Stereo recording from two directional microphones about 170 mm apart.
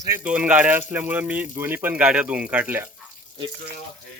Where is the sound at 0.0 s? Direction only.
15° right (ahead or behind).